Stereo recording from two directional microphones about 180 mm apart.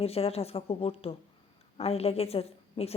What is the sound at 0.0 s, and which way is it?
Speech, 35° left (ahead or behind).